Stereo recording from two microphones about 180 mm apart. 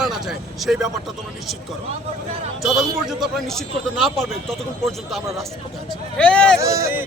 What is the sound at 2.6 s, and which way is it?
Speech, centre (ahead or behind).